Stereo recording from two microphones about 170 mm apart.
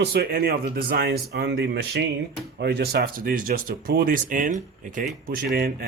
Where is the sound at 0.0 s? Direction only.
65° right (ahead or behind); by 5.0 s 50° right (ahead or behind).